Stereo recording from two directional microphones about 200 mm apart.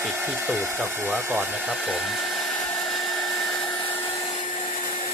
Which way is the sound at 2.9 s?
Centre (ahead or behind).